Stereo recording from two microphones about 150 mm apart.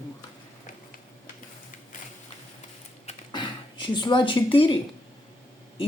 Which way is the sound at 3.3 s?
30° left (ahead or behind).